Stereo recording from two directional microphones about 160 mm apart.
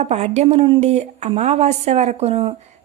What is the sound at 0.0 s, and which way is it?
Speech, 45° right (ahead or behind).